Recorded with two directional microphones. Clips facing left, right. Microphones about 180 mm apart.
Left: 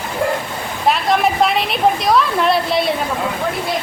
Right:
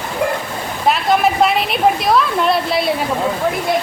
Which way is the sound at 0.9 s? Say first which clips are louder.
Right 1 dB; centre (ahead or behind).